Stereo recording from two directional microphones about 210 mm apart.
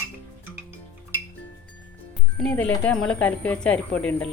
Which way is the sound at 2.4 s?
5° left (ahead or behind).